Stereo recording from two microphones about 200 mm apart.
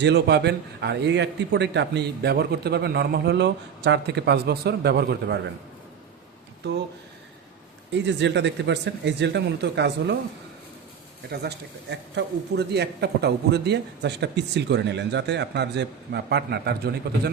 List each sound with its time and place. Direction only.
0.0 s a man's voice: 60° right (ahead or behind)
7.9 s a man's voice: 60° right (ahead or behind)
11.3 s a man's voice: 55° right (ahead or behind)